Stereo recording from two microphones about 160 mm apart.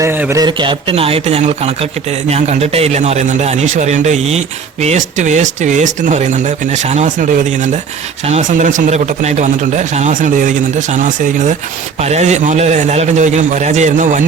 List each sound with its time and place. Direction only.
0.0 s a man's voice: 15° right (ahead or behind); by 14.3 s 50° right (ahead or behind)